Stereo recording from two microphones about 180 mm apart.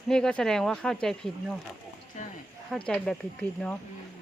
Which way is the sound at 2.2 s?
40° left (ahead or behind).